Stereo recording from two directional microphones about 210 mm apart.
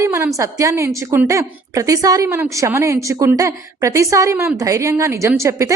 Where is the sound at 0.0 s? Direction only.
15° right (ahead or behind).